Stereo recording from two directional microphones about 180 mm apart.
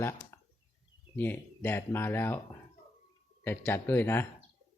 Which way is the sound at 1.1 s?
10° left (ahead or behind).